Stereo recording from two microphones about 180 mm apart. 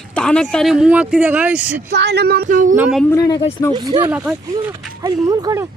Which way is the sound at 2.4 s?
45° right (ahead or behind).